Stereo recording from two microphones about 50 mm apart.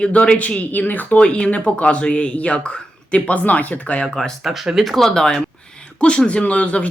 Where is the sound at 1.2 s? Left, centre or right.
Left.